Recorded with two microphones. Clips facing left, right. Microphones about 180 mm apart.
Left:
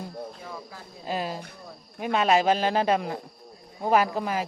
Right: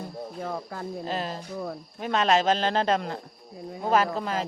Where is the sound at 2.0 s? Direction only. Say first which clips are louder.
Left 1 dB; 10° left (ahead or behind).